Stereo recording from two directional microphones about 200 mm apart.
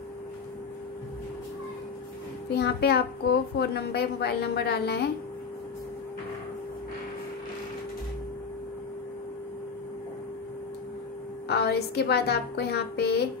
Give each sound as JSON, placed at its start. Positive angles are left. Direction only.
{"t": 2.5, "sound": "a child's voice", "side_deg": 55}
{"t": 11.4, "sound": "a child's voice", "side_deg": 55}